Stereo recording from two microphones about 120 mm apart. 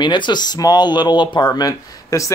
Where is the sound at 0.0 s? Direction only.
40° left (ahead or behind).